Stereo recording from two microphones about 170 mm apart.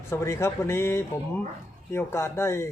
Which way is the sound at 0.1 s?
15° left (ahead or behind).